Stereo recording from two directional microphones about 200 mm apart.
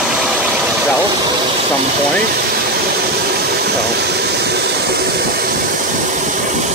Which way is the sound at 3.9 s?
55° right (ahead or behind).